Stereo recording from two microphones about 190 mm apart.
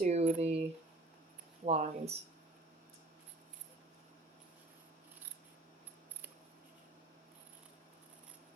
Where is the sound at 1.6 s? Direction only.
35° right (ahead or behind).